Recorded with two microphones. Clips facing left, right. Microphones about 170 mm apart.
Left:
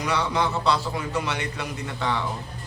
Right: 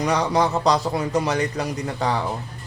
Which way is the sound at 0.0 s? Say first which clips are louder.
Right 5 dB; 40° right (ahead or behind).